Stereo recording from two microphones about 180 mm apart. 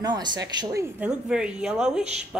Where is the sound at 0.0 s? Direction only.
25° right (ahead or behind).